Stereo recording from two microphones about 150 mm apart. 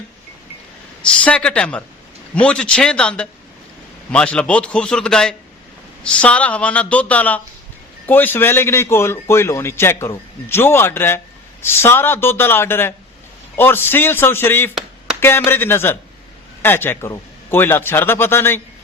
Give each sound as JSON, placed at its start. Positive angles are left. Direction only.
{"t": 1.0, "sound": "a man's voice", "side_deg": 5}